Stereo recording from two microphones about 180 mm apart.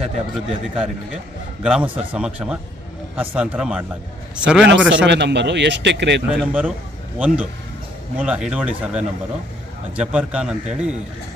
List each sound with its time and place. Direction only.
0.5 s a man's voice: 5° right (ahead or behind)
4.6 s speech: 85° right
6.2 s a man's voice: 5° right (ahead or behind)